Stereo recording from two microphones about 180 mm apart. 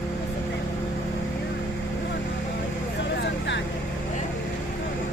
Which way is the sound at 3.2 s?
80° left.